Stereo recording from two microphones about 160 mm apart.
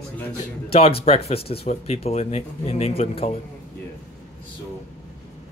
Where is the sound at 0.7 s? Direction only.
35° left (ahead or behind).